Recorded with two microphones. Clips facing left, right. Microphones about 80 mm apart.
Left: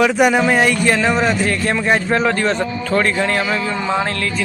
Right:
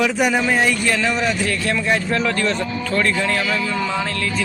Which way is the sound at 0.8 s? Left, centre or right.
Left.